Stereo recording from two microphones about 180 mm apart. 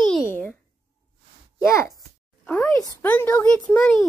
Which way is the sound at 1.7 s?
15° left (ahead or behind).